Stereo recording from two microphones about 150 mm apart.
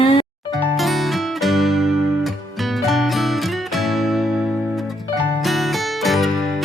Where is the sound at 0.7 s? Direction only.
Centre (ahead or behind).